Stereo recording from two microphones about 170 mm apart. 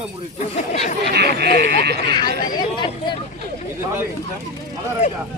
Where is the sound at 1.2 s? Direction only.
75° right (ahead or behind).